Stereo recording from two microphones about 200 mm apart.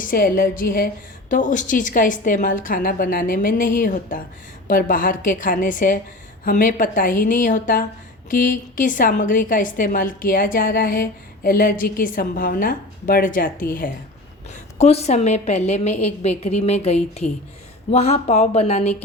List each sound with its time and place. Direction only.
0.0 s a woman's voice: 45° left (ahead or behind)
14.8 s a woman's voice: 30° left (ahead or behind)